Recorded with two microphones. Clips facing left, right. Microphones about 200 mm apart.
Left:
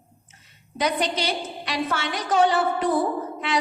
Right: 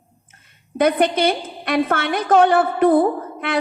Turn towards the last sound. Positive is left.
turn(degrees=-55)  # may be behind; listen again after turning